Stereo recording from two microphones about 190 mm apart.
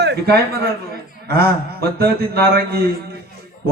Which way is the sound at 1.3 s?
55° right (ahead or behind).